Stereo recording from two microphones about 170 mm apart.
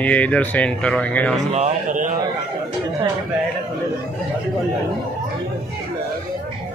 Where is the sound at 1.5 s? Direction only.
45° right (ahead or behind).